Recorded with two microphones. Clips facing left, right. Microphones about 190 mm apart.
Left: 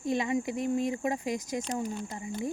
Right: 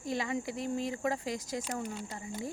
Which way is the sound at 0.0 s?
20° left (ahead or behind).